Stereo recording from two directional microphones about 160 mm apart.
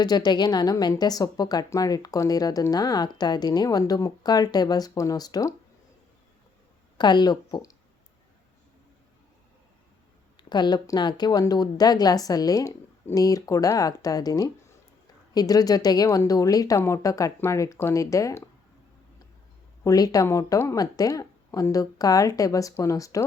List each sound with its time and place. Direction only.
0.0 s speech: 25° left (ahead or behind)
7.0 s speech: 25° left (ahead or behind)
10.5 s speech: 25° left (ahead or behind)
19.8 s speech: 20° left (ahead or behind)